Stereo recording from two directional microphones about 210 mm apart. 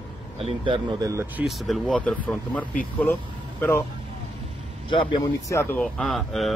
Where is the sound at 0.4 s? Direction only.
25° right (ahead or behind).